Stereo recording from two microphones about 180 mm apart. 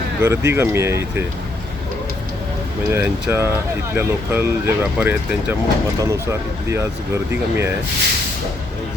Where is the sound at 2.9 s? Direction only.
10° right (ahead or behind).